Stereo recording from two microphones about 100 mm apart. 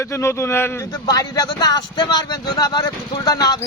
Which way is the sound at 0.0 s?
25° left (ahead or behind).